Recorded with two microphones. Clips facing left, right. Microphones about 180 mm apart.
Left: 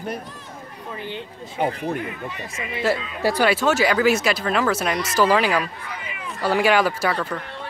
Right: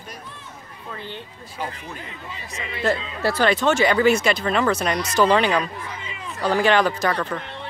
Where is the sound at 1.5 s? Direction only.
60° left (ahead or behind).